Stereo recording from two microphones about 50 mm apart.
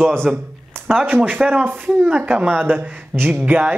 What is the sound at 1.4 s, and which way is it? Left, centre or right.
Speech, right.